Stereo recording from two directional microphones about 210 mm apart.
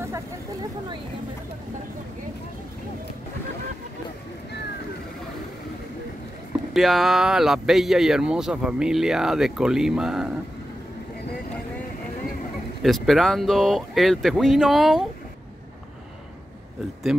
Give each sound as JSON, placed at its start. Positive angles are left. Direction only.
{"t": 0.0, "sound": "a sound", "side_deg": -15}
{"t": 6.7, "sound": "speech", "side_deg": 0}
{"t": 12.8, "sound": "speech", "side_deg": 0}
{"t": 17.1, "sound": "speech", "side_deg": -5}